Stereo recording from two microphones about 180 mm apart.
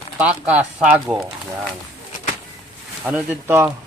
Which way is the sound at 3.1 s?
10° right (ahead or behind).